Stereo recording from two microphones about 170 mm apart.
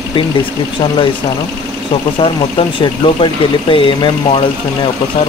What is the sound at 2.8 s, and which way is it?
Speech, 30° left (ahead or behind).